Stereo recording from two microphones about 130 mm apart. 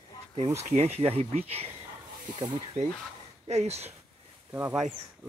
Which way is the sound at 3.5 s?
55° right (ahead or behind).